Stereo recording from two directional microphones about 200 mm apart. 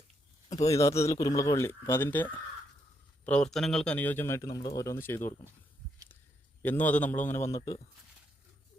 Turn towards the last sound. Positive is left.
turn(degrees=15)  # may be behind; listen again after turning